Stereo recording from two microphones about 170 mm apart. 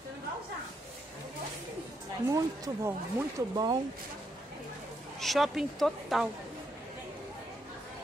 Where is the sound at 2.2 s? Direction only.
20° right (ahead or behind).